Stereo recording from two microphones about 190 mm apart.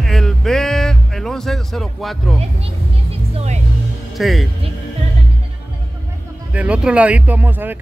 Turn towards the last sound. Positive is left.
turn(degrees=-10)  # may be behind; listen again after turning